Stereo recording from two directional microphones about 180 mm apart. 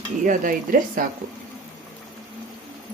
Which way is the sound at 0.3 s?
50° right (ahead or behind).